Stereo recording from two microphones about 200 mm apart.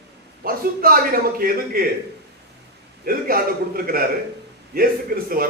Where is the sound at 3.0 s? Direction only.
45° right (ahead or behind).